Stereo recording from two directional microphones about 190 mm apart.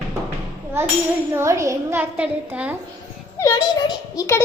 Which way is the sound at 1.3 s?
15° right (ahead or behind).